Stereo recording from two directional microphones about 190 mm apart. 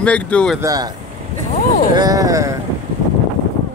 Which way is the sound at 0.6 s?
20° right (ahead or behind).